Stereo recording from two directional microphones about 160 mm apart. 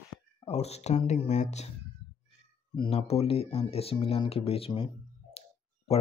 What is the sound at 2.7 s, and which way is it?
Speech, 35° left (ahead or behind).